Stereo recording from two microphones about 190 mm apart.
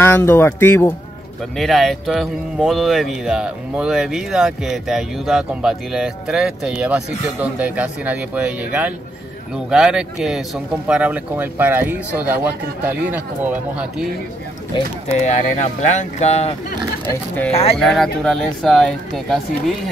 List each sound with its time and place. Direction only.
0.0 s speech: 10° left (ahead or behind)
1.6 s speech: centre (ahead or behind)
15.1 s speech: 35° left (ahead or behind)
17.7 s speech: centre (ahead or behind)